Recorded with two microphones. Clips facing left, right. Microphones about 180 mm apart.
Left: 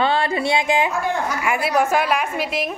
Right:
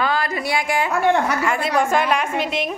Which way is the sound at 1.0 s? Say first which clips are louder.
Right 5 dB; 70° right (ahead or behind).